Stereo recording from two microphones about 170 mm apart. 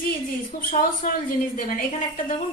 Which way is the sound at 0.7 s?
55° left (ahead or behind).